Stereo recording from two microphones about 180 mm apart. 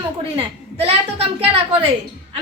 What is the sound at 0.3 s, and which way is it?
Speech, 30° right (ahead or behind).